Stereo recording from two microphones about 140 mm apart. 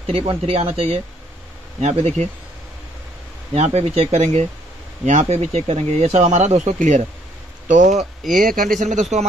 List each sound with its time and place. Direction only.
0.0 s speech: 40° right (ahead or behind)
3.5 s speech: 50° right (ahead or behind)
8.4 s speech: 90° right
9.1 s speech: 60° right (ahead or behind)